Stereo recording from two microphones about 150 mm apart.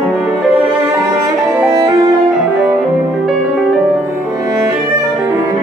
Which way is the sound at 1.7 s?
30° right (ahead or behind).